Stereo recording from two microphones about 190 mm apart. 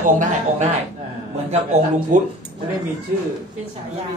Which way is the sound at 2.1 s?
45° right (ahead or behind).